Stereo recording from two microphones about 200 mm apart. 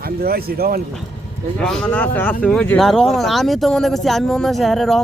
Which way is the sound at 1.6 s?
5° left (ahead or behind).